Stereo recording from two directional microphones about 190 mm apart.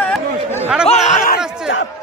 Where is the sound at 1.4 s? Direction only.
5° right (ahead or behind).